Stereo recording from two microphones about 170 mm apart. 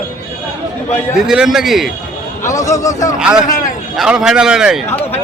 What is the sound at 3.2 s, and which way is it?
A man's voice, 5° right (ahead or behind).